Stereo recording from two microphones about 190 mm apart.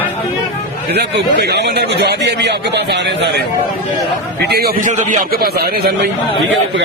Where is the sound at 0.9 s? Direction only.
60° right (ahead or behind).